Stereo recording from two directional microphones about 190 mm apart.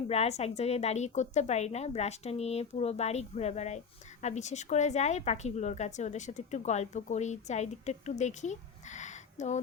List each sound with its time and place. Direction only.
0.1 s a woman's voice: 35° left (ahead or behind)